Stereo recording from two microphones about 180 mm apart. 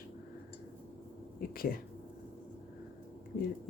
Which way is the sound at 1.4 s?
55° left (ahead or behind).